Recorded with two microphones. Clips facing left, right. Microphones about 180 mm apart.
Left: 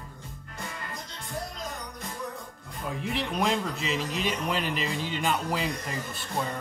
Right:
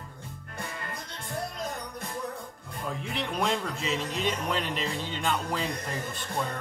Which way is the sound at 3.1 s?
Centre (ahead or behind).